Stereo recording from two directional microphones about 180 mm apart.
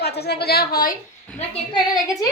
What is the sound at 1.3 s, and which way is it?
Speech, 25° left (ahead or behind).